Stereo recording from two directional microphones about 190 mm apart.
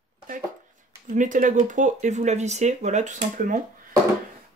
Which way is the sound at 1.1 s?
40° right (ahead or behind).